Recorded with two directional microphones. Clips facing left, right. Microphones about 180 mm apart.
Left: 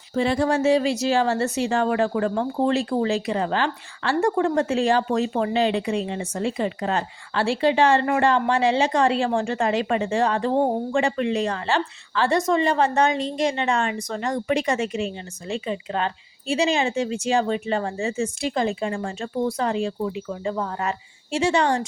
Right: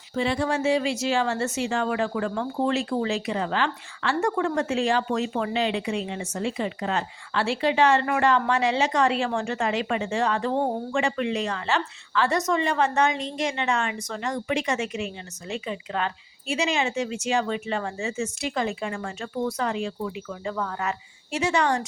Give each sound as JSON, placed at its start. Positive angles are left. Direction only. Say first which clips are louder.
{"t": 0.1, "sound": "speech", "louder": "left 4 dB", "side_deg": 40}